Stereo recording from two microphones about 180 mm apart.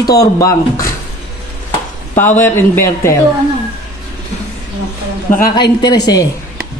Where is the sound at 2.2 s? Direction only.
10° left (ahead or behind).